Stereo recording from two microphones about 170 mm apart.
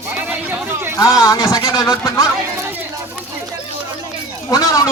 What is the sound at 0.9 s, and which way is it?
A man's voice, 20° left (ahead or behind).